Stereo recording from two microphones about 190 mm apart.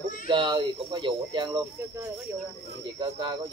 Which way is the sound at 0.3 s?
25° right (ahead or behind).